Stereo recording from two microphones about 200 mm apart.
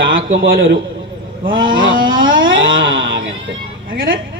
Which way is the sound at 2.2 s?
75° right (ahead or behind).